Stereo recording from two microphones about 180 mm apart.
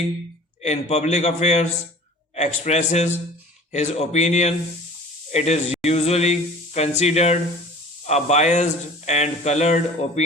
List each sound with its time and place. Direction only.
0.6 s speech: 40° left (ahead or behind)